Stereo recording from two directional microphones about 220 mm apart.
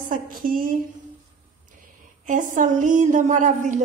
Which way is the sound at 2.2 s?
35° right (ahead or behind).